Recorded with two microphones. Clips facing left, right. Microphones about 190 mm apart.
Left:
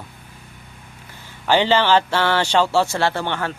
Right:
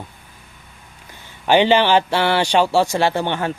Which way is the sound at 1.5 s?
15° right (ahead or behind).